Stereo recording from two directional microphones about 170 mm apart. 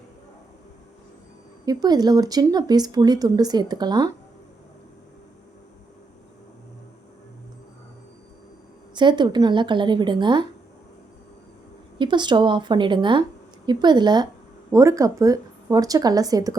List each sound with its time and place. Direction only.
1.6 s speech: 25° right (ahead or behind)
9.0 s speech: 25° right (ahead or behind)
11.9 s speech: 25° right (ahead or behind)